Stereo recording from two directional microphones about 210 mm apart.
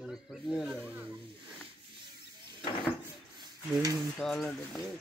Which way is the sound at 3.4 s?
15° right (ahead or behind).